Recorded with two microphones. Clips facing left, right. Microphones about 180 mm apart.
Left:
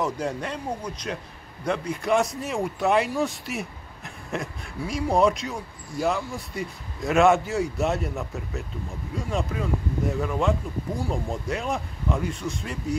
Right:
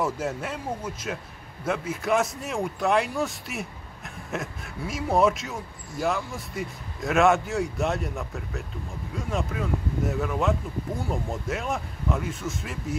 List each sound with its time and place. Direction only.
0.0 s a man's voice: 5° right (ahead or behind)